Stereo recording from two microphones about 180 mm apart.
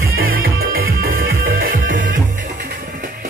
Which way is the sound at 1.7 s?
50° right (ahead or behind).